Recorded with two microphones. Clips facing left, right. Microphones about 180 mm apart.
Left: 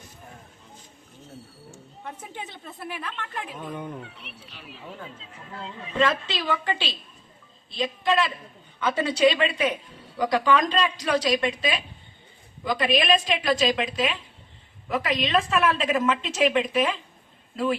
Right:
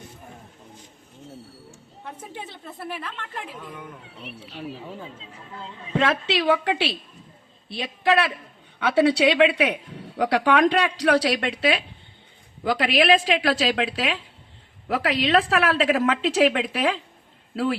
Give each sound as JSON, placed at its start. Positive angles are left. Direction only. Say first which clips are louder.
{"t": 3.7, "sound": "speech", "louder": "left 5 dB", "side_deg": 30}
{"t": 4.5, "sound": "speech", "louder": "right 7 dB", "side_deg": -35}
{"t": 6.0, "sound": "a woman's voice", "louder": "right 2 dB", "side_deg": -75}